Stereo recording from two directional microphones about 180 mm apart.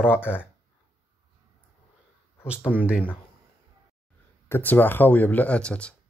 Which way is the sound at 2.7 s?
10° right (ahead or behind).